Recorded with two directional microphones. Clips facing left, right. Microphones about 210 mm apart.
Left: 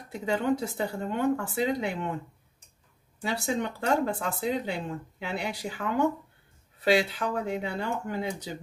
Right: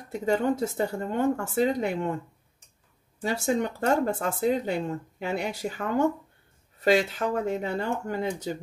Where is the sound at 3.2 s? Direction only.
45° right (ahead or behind).